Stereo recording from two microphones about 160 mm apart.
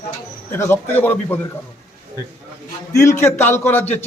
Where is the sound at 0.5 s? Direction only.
15° left (ahead or behind).